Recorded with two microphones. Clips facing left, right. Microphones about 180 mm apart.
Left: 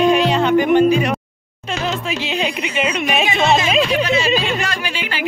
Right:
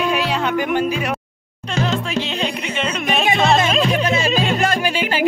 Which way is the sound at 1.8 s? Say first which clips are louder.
Right 3 dB; 5° left (ahead or behind).